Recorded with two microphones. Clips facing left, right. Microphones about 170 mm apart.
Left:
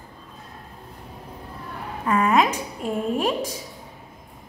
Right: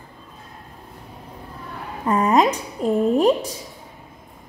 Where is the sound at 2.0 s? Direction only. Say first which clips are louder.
Right 2 dB; 35° right (ahead or behind).